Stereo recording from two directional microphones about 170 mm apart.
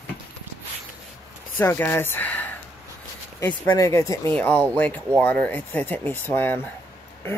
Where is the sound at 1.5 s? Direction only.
15° left (ahead or behind).